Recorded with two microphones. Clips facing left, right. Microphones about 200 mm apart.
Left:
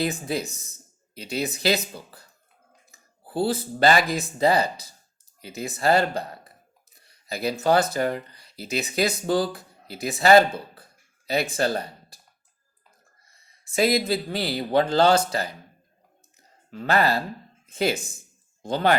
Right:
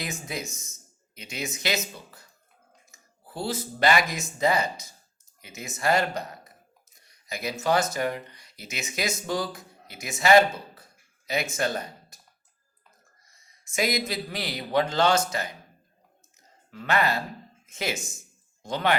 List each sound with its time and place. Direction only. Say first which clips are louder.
0.0 s speech: left 8 dB; 35° left (ahead or behind)
7.0 s a sound: left 6 dB; 30° left (ahead or behind)
7.6 s speech: left 3 dB; 30° left (ahead or behind)
13.7 s speech: left 6 dB; 30° left (ahead or behind)
16.7 s speech: left 3 dB; 35° left (ahead or behind)